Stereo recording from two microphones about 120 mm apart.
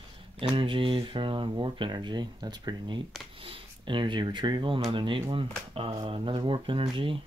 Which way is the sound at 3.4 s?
50° right (ahead or behind).